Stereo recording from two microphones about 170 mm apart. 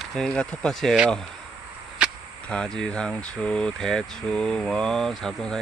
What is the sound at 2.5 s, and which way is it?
Speech, 5° left (ahead or behind).